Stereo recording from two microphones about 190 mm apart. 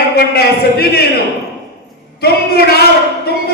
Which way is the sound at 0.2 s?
55° left (ahead or behind).